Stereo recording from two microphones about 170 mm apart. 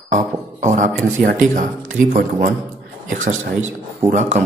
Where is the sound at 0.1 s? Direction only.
45° right (ahead or behind).